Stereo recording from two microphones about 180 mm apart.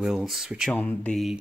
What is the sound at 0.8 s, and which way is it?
Speech, 10° left (ahead or behind).